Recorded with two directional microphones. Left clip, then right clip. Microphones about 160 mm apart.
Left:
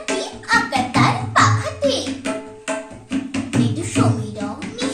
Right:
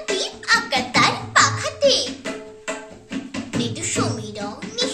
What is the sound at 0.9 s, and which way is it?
Music, 35° right (ahead or behind).